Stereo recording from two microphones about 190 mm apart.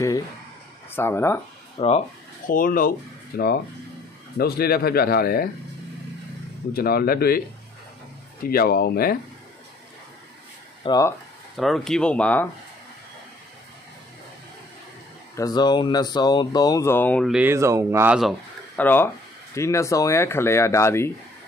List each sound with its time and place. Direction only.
0.8 s speech: 10° left (ahead or behind)
1.8 s speech: 35° left (ahead or behind)
2.5 s speech: 45° left (ahead or behind)
6.7 s speech: 55° left (ahead or behind)
8.5 s speech: 50° left (ahead or behind)
10.8 s speech: 20° left (ahead or behind)
11.5 s speech: centre (ahead or behind)
15.3 s speech: 20° left (ahead or behind)
17.3 s speech: 10° right (ahead or behind)
18.8 s speech: 10° left (ahead or behind)